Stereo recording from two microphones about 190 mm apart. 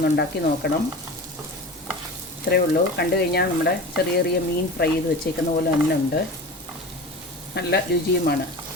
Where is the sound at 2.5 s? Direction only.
60° left (ahead or behind).